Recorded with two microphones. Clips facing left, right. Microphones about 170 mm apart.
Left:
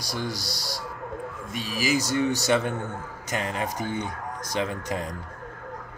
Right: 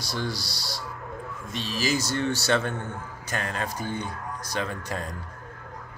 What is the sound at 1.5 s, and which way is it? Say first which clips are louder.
Speech: left 1 dB; 10° left (ahead or behind).